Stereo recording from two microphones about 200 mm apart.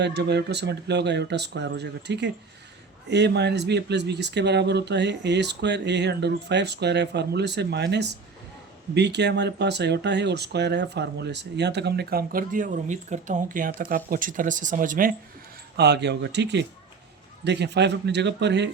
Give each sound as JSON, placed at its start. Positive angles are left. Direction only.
{"t": 0.0, "sound": "speech", "side_deg": -55}
{"t": 15.8, "sound": "speech", "side_deg": -55}